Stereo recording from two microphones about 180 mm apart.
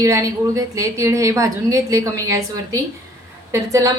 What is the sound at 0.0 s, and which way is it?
A woman's voice, 20° right (ahead or behind).